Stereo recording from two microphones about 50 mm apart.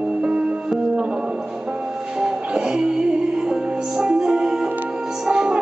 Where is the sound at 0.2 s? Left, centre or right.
Right.